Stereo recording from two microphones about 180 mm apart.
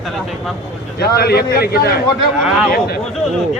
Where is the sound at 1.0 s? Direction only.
60° left (ahead or behind).